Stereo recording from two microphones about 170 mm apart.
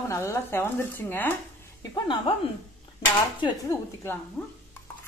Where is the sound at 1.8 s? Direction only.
25° left (ahead or behind).